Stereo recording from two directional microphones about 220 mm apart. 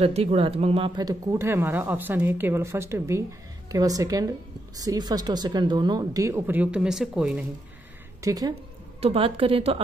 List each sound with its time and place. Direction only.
0.0 s a woman's voice: 25° right (ahead or behind); by 7.4 s 5° right (ahead or behind)
8.2 s a woman's voice: 15° right (ahead or behind)